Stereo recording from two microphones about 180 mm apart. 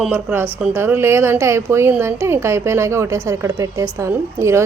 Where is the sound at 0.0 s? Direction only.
10° right (ahead or behind).